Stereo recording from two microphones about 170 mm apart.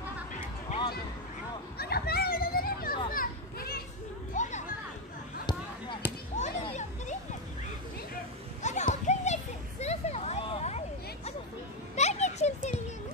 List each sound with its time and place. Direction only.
1.8 s children playing: 65° left (ahead or behind)
4.3 s children playing: 45° left (ahead or behind)
6.3 s children playing: 45° left (ahead or behind)
8.6 s children playing: 45° left (ahead or behind)
11.9 s a sound: 40° left (ahead or behind)